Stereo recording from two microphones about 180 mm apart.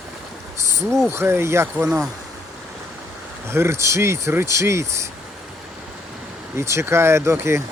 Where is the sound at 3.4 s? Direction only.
15° right (ahead or behind).